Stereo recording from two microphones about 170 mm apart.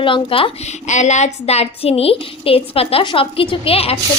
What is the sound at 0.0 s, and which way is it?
Speech, 30° left (ahead or behind).